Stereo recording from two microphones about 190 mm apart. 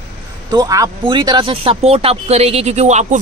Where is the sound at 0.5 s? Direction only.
20° right (ahead or behind).